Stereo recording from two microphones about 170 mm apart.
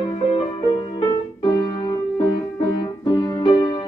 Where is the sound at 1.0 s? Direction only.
25° left (ahead or behind).